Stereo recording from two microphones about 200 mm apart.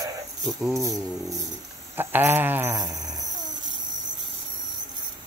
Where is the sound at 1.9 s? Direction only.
10° right (ahead or behind).